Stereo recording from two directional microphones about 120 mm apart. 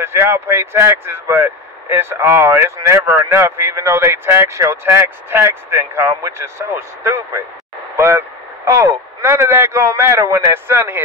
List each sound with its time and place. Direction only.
0.0 s speech: 20° right (ahead or behind)
7.9 s vehicle: 20° right (ahead or behind)
8.6 s a man's voice: 25° right (ahead or behind)